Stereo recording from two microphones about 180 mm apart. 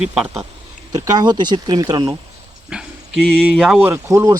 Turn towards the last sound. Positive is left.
turn(degrees=-20)  # may be behind; listen again after turning